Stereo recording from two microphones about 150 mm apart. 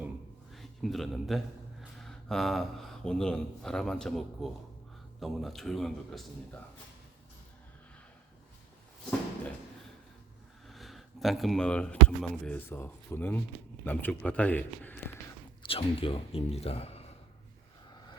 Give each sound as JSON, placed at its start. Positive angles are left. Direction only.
{"t": 0.5, "sound": "a man's voice", "side_deg": 0}
{"t": 10.7, "sound": "speech", "side_deg": 0}
{"t": 15.6, "sound": "speech", "side_deg": 40}